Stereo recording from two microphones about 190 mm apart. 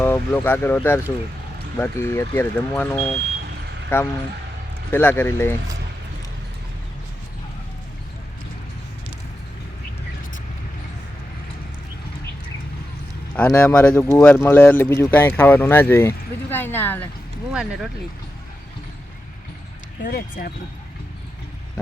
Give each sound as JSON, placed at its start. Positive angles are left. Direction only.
{"t": 0.0, "sound": "speech", "side_deg": 10}
{"t": 13.3, "sound": "speech", "side_deg": 10}
{"t": 17.5, "sound": "speech", "side_deg": -5}
{"t": 20.1, "sound": "speech", "side_deg": 50}